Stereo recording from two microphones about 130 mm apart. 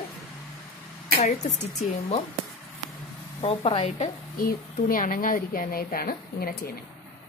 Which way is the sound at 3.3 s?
45° left (ahead or behind).